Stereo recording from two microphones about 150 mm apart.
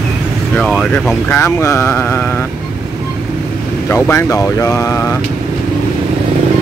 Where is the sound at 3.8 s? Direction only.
15° left (ahead or behind).